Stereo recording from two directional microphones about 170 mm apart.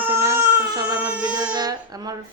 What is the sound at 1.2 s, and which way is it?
Speech, 25° right (ahead or behind).